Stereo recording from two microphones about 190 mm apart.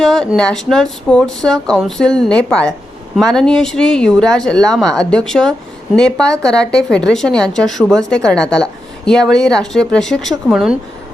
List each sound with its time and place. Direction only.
0.0 s speech: centre (ahead or behind)